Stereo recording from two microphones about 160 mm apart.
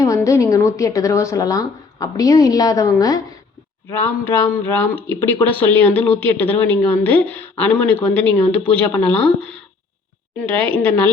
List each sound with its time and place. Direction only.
0.0 s a woman's voice: 20° left (ahead or behind)